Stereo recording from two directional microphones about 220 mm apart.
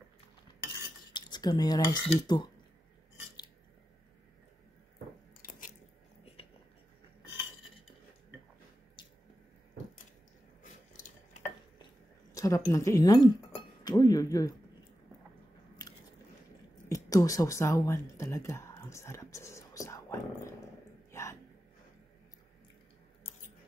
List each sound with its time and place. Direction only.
1.1 s cutlery: 20° left (ahead or behind)
5.4 s biting: 40° left (ahead or behind)
10.6 s a sound: 35° left (ahead or behind)
11.8 s dishes: 15° left (ahead or behind)
15.8 s biting: 15° left (ahead or behind)
16.9 s speech: 15° left (ahead or behind)
21.1 s a sound: 10° left (ahead or behind)